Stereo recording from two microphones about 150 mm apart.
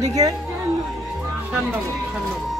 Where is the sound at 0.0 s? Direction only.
25° right (ahead or behind).